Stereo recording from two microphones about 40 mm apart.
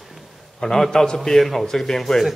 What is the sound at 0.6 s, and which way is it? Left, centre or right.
A man's voice, centre.